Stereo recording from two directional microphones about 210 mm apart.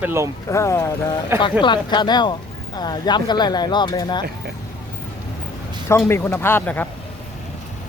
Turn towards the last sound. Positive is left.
turn(degrees=10)  # may be behind; listen again after turning